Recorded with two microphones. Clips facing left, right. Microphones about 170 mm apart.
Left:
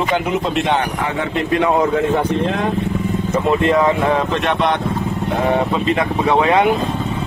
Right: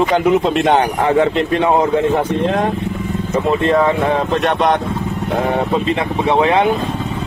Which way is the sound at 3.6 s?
30° right (ahead or behind).